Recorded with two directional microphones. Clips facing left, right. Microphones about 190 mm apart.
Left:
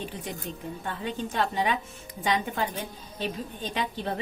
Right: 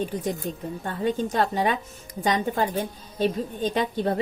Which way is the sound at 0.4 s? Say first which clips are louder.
Right 4 dB; 40° right (ahead or behind).